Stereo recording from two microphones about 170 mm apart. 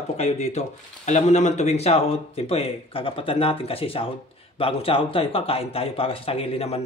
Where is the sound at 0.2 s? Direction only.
40° left (ahead or behind).